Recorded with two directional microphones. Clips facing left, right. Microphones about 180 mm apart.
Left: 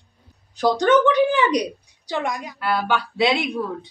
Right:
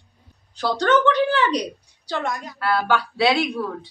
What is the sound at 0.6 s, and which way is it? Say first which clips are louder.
A woman's voice: left 3 dB; 15° left (ahead or behind).